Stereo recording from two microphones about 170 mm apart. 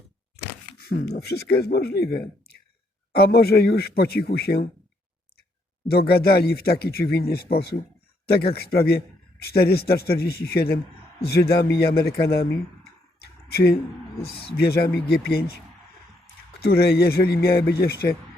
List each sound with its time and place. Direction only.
0.4 s speech: 70° left (ahead or behind)
3.2 s speech: 70° left (ahead or behind)
5.9 s speech: 65° left (ahead or behind)
13.5 s speech: 70° left (ahead or behind)
16.6 s a man's voice: 65° left (ahead or behind)